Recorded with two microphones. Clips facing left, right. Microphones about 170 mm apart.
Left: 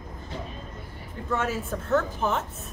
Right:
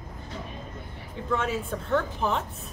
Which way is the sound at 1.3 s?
5° left (ahead or behind).